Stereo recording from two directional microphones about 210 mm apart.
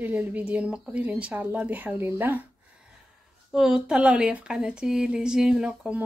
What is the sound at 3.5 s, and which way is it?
Speech, 5° right (ahead or behind).